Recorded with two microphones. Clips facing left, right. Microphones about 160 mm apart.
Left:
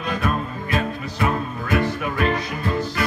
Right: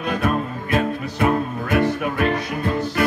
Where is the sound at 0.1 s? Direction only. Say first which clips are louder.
Right 2 dB; 60° right (ahead or behind).